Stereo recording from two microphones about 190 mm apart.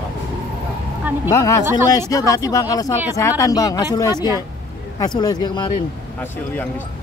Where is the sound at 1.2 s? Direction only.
15° left (ahead or behind).